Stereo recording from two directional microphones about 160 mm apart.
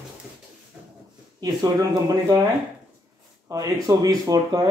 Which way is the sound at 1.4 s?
25° right (ahead or behind).